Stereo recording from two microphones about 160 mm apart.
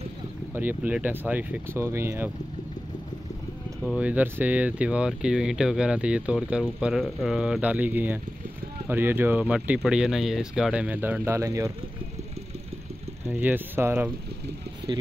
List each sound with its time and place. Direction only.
0.6 s speech: 10° right (ahead or behind)
3.8 s speech: 5° right (ahead or behind)
13.3 s speech: 10° right (ahead or behind)
14.8 s a sound: 90° right